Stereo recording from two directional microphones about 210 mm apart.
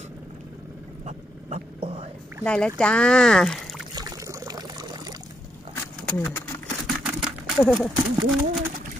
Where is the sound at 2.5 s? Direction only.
5° left (ahead or behind).